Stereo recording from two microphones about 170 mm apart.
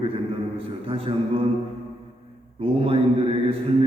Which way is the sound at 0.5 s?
35° right (ahead or behind).